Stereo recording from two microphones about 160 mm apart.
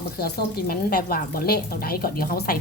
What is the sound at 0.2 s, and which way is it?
A woman's voice, 75° left (ahead or behind).